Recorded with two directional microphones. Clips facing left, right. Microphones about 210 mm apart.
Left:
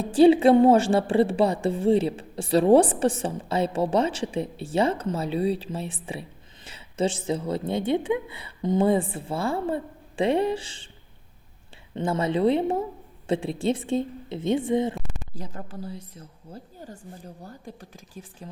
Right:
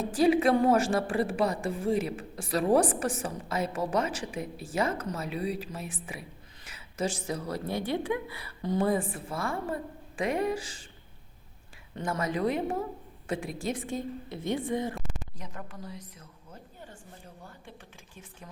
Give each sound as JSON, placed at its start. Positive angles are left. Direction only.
{"t": 0.0, "sound": "a woman's voice", "side_deg": 30}
{"t": 11.9, "sound": "a woman's voice", "side_deg": 25}